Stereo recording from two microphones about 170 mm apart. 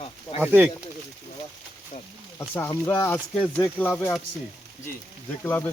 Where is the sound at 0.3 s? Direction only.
10° right (ahead or behind).